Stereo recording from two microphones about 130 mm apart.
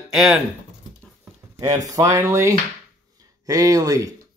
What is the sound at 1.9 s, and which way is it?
Speech, 25° right (ahead or behind).